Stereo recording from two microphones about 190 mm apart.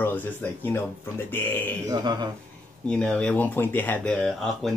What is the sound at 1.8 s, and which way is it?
Speech, 20° right (ahead or behind).